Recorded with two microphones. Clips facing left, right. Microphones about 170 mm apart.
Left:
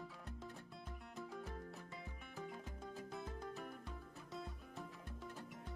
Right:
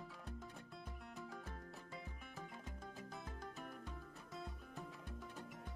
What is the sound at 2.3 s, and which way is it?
Music, centre (ahead or behind).